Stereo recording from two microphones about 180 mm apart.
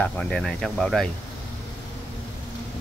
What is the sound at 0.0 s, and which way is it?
Speech, 5° left (ahead or behind).